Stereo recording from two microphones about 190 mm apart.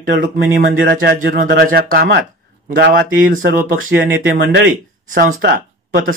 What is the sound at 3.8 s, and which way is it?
Speech, 85° right.